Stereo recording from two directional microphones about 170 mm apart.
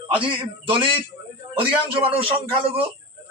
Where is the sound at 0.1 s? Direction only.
30° right (ahead or behind).